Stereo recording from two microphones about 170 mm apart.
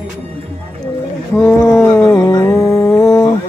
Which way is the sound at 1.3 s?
10° left (ahead or behind).